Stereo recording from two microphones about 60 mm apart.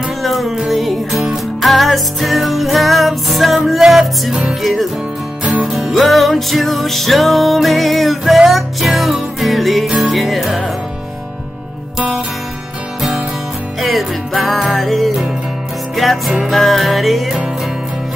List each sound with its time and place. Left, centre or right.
0.2 s music: centre
13.7 s music: centre